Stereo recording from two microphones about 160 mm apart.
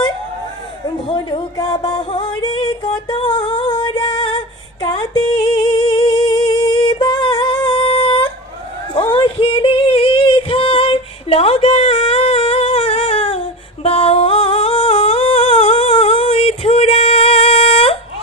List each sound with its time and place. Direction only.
0.8 s music: 30° left (ahead or behind)